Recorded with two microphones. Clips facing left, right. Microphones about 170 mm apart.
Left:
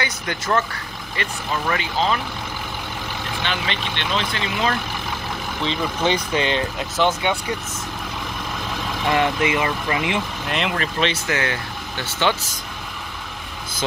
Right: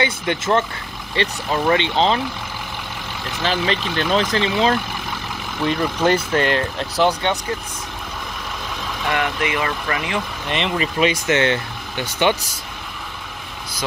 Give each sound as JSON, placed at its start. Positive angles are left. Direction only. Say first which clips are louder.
{"t": 0.0, "sound": "speech", "louder": "right 6 dB", "side_deg": -25}
{"t": 3.4, "sound": "speech", "louder": "right 7 dB", "side_deg": -35}
{"t": 6.3, "sound": "speech", "louder": "right 2 dB", "side_deg": 0}
{"t": 9.1, "sound": "speech", "louder": "left 3 dB", "side_deg": 25}
{"t": 10.5, "sound": "speech", "louder": "right 2 dB", "side_deg": 0}
{"t": 11.2, "sound": "speech", "louder": "right 6 dB", "side_deg": -25}
{"t": 12.1, "sound": "speech", "louder": "right 3 dB", "side_deg": -15}